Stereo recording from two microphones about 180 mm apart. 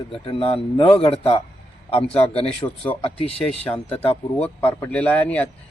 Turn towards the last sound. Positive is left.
turn(degrees=10)  # may be behind; listen again after turning